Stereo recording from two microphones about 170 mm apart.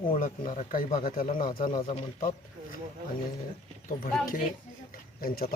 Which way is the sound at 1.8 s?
35° left (ahead or behind).